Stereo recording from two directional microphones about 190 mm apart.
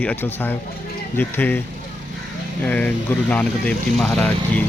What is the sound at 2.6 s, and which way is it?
Speech, 10° left (ahead or behind).